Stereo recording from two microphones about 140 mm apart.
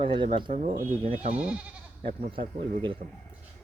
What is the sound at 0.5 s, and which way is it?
Speech, 60° right (ahead or behind).